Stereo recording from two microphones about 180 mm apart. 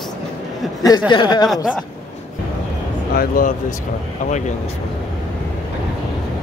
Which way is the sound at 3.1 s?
50° left (ahead or behind).